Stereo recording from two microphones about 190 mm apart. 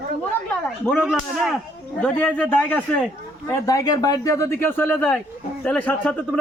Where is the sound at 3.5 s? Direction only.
20° left (ahead or behind).